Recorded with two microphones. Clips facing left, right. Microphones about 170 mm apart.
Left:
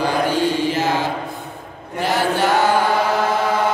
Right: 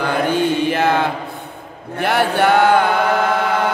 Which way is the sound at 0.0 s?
60° right (ahead or behind).